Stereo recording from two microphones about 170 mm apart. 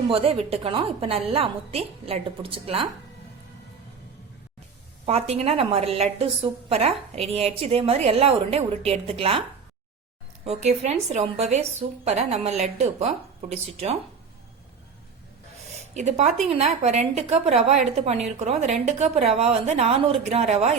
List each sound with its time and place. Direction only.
0.1 s a woman's voice: 35° right (ahead or behind)
5.0 s a woman's voice: 40° right (ahead or behind)
10.4 s a woman's voice: 40° right (ahead or behind)
16.0 s a woman's voice: 45° right (ahead or behind)